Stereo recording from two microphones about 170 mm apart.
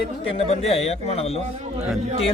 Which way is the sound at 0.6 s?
35° left (ahead or behind).